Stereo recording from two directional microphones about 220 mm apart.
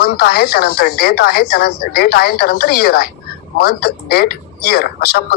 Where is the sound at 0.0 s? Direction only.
45° left (ahead or behind).